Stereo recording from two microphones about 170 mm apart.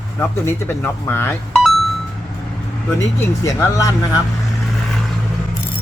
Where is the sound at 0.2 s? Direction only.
15° left (ahead or behind).